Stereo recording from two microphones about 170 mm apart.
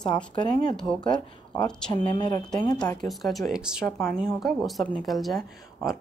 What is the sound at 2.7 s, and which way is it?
Speech, 5° left (ahead or behind).